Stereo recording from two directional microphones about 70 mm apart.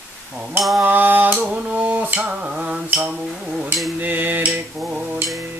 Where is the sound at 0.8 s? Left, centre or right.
Right.